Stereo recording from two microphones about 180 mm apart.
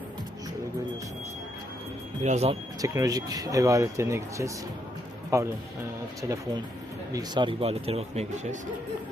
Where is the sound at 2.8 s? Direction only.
20° right (ahead or behind).